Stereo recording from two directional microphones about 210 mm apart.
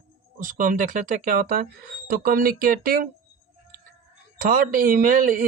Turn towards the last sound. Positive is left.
turn(degrees=-40)  # may be behind; listen again after turning